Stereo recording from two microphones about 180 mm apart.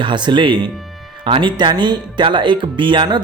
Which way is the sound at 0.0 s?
25° right (ahead or behind).